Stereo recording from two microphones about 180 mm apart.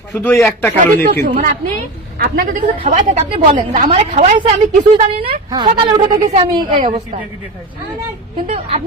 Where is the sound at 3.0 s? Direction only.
30° right (ahead or behind).